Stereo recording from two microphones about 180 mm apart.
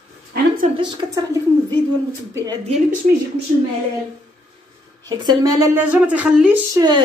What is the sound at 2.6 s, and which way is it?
Speech, 40° right (ahead or behind).